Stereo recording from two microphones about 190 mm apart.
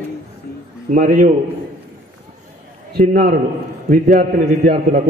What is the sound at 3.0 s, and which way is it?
A man's voice, 50° right (ahead or behind).